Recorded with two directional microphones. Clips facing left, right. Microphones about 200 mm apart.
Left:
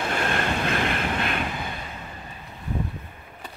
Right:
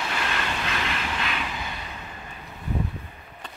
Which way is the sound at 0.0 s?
50° left (ahead or behind).